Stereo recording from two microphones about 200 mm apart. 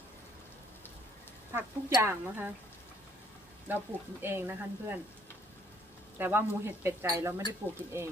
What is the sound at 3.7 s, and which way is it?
Speech, 10° right (ahead or behind).